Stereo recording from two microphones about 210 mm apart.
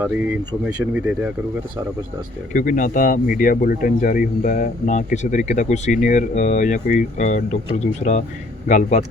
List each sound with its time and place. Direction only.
0.0 s speech: 5° right (ahead or behind)
2.5 s speech: 40° left (ahead or behind)
8.6 s speech: 35° left (ahead or behind)